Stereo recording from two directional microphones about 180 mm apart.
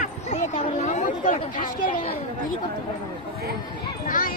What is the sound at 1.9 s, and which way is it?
Speech, 30° left (ahead or behind).